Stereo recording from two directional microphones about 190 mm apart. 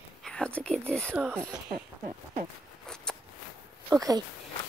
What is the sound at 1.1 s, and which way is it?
Speech, 10° right (ahead or behind).